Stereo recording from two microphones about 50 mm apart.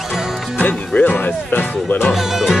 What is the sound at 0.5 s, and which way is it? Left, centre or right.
Music, left.